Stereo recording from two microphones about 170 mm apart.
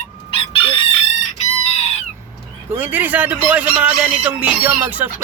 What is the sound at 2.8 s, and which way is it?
Speech, 10° right (ahead or behind).